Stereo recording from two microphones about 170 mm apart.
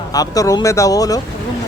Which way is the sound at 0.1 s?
20° left (ahead or behind).